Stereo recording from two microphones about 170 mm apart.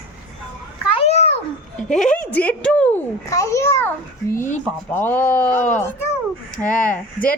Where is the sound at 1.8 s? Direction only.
5° left (ahead or behind).